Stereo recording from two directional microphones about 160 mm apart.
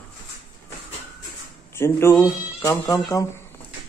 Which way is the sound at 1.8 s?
15° left (ahead or behind).